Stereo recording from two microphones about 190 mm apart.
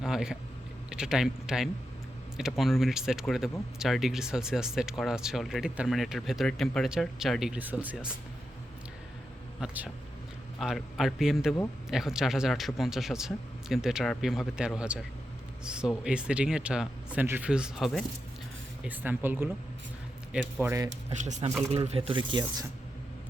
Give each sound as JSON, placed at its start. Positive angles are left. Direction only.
{"t": 0.0, "sound": "a sound", "side_deg": -5}
{"t": 0.9, "sound": "speech", "side_deg": -5}
{"t": 9.6, "sound": "speech", "side_deg": -5}
{"t": 20.6, "sound": "speech", "side_deg": -15}
{"t": 21.1, "sound": "speech", "side_deg": -40}